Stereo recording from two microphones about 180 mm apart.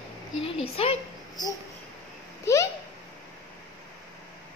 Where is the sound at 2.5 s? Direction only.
15° left (ahead or behind).